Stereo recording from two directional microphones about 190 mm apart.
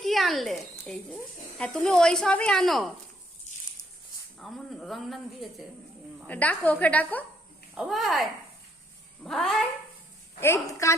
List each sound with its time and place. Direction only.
0.0 s speech: centre (ahead or behind)
4.4 s a woman's voice: centre (ahead or behind)
10.4 s a woman's voice: 15° left (ahead or behind)